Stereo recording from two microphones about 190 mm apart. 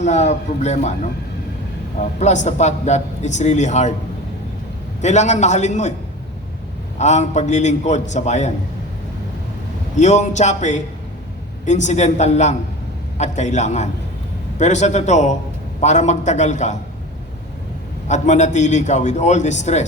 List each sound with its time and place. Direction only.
0.0 s a man's voice: 35° left (ahead or behind)
2.1 s a man's voice: 40° left (ahead or behind)
5.0 s a man's voice: 40° left (ahead or behind)
7.0 s a man's voice: 40° left (ahead or behind)
10.0 s a man's voice: 40° left (ahead or behind)
18.1 s a man's voice: 40° left (ahead or behind)